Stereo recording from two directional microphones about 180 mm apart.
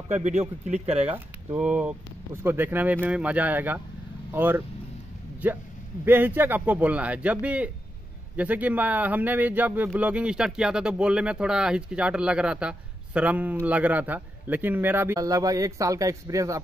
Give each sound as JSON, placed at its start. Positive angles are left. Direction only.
{"t": 0.7, "sound": "speech", "side_deg": -35}
{"t": 1.1, "sound": "speech", "side_deg": -10}